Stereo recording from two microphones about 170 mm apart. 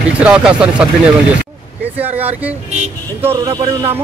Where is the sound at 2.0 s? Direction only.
10° right (ahead or behind).